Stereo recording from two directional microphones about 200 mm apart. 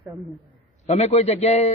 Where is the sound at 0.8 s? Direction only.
35° left (ahead or behind).